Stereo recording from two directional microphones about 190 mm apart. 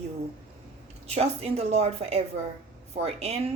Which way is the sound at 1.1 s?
30° right (ahead or behind).